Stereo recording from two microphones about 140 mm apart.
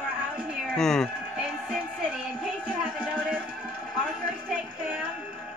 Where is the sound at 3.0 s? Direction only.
5° right (ahead or behind).